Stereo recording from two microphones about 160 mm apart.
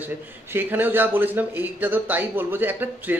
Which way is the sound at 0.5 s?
15° right (ahead or behind).